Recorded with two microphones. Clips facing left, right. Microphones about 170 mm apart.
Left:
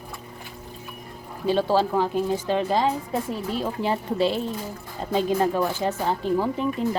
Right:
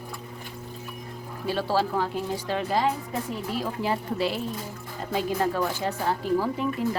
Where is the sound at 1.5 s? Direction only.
20° left (ahead or behind).